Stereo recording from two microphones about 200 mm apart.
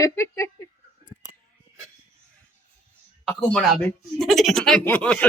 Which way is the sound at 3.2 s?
Centre (ahead or behind).